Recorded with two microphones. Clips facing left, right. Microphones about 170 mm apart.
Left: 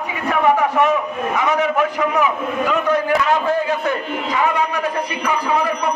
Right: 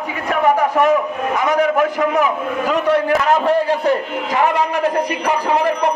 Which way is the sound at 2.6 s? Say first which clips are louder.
Right 2 dB; 30° right (ahead or behind).